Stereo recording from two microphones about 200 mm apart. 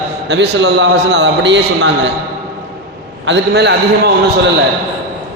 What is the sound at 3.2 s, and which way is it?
A man's voice, 60° right (ahead or behind).